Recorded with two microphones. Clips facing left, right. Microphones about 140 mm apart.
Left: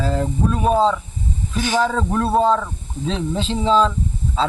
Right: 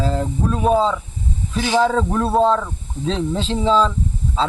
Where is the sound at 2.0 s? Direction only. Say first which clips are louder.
Right 1 dB; centre (ahead or behind).